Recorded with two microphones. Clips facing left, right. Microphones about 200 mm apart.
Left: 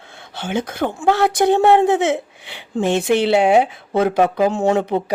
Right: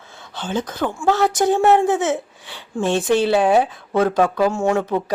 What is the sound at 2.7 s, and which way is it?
Speech, 20° left (ahead or behind).